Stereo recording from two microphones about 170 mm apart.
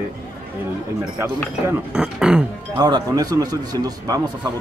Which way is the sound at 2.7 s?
25° right (ahead or behind).